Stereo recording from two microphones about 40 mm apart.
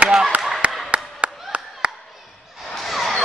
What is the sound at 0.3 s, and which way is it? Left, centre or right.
Clapping, right.